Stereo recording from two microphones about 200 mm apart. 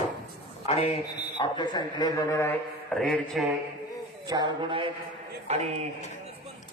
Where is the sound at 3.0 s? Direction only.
Centre (ahead or behind).